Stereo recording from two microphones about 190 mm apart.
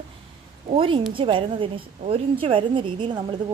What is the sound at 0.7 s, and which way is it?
A woman's voice, 25° right (ahead or behind).